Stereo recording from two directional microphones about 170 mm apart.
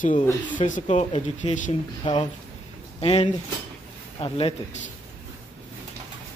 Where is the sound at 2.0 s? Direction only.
25° left (ahead or behind).